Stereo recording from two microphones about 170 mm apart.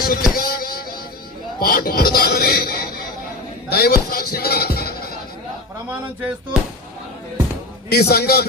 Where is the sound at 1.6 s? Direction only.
65° left (ahead or behind).